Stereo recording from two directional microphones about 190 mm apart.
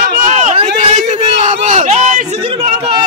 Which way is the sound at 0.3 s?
40° right (ahead or behind).